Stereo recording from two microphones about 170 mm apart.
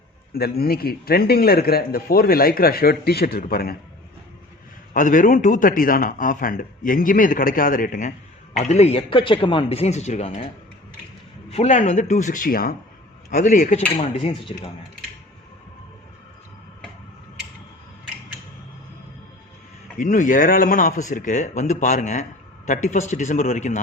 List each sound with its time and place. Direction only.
0.3 s a man's voice: 65° left (ahead or behind)
4.9 s a man's voice: 50° left (ahead or behind)
11.5 s a man's voice: 45° left (ahead or behind)
14.0 s speech: 35° left (ahead or behind)
20.0 s a man's voice: 50° left (ahead or behind)